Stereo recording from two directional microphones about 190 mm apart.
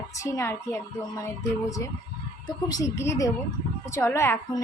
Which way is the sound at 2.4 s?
20° left (ahead or behind).